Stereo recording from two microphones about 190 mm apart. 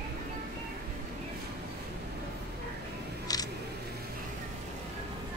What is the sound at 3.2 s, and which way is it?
Single-lens reflex camera, 20° left (ahead or behind).